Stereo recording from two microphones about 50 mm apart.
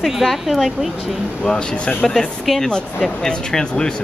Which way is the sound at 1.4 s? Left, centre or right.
Centre.